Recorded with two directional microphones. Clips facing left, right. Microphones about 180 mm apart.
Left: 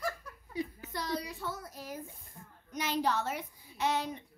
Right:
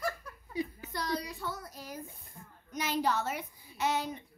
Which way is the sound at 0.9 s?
5° left (ahead or behind).